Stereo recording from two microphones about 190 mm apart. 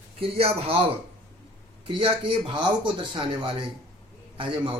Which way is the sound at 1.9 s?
25° right (ahead or behind).